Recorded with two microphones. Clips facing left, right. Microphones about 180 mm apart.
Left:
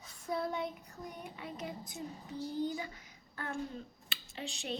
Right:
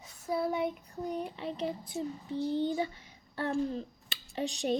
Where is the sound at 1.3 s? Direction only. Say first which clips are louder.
Right 7 dB; 30° right (ahead or behind).